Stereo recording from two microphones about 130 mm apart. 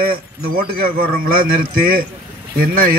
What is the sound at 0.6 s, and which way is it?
A man's voice, 90° right.